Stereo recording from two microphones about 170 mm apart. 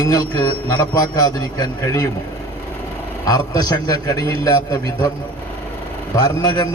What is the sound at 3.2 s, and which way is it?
A man's voice, 20° left (ahead or behind).